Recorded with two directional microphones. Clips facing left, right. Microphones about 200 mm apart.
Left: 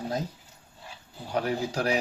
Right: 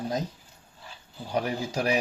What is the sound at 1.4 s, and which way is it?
Speech, 15° right (ahead or behind).